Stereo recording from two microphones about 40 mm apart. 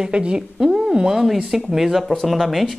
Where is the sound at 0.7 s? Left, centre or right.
Centre.